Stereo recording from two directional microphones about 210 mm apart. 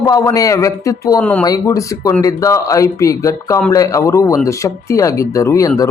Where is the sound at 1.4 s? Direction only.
15° left (ahead or behind).